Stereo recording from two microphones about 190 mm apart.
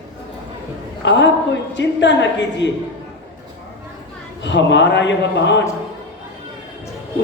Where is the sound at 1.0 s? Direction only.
70° left (ahead or behind).